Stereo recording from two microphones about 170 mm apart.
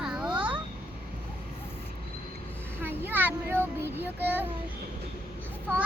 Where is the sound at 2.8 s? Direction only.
10° right (ahead or behind).